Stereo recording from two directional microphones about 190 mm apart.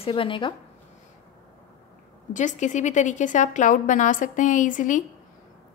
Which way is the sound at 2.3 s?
40° left (ahead or behind).